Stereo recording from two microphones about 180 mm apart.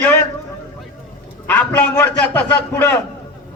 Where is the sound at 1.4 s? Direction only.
10° left (ahead or behind).